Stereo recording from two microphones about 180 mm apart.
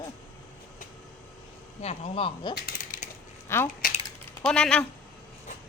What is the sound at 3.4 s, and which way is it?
A woman's voice, 15° left (ahead or behind).